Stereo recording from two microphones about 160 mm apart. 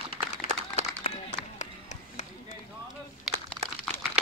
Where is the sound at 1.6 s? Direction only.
50° left (ahead or behind).